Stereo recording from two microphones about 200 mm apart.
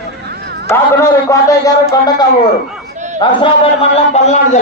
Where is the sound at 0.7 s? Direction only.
15° left (ahead or behind).